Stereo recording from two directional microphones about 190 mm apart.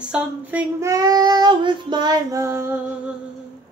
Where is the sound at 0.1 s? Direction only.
10° right (ahead or behind).